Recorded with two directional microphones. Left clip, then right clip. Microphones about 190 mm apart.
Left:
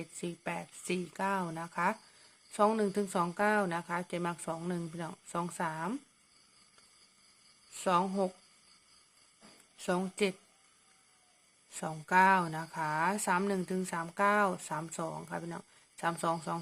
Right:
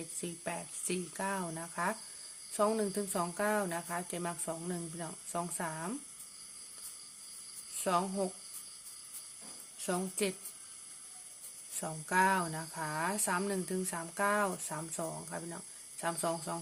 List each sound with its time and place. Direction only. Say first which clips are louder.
0.0 s speech: left 1 dB; 20° left (ahead or behind)
7.8 s speech: left 3 dB; 25° left (ahead or behind)
9.7 s speech: left 3 dB; 20° left (ahead or behind)
11.7 s speech: left 4 dB; 20° left (ahead or behind)